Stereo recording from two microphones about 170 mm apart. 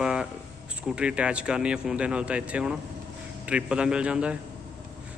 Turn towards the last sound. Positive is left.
turn(degrees=-5)  # may be behind; listen again after turning